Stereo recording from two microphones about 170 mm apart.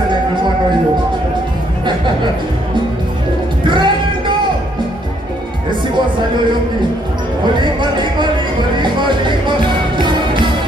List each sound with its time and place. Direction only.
3.6 s music: 30° right (ahead or behind)
7.6 s a sound: 25° right (ahead or behind)
8.7 s music: 25° right (ahead or behind)